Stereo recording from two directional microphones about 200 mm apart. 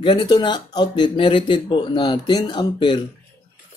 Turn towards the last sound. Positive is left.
turn(degrees=25)  # may be behind; listen again after turning